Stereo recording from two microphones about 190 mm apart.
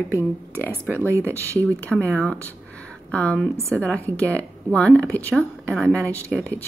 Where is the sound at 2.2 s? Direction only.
5° left (ahead or behind).